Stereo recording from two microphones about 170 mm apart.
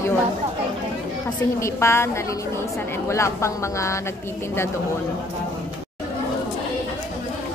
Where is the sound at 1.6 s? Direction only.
15° left (ahead or behind).